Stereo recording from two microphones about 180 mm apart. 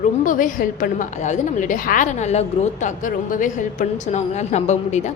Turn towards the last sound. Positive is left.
turn(degrees=40)  # may be behind; listen again after turning